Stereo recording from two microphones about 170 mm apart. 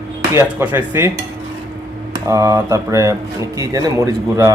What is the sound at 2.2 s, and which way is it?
Speech, 20° right (ahead or behind).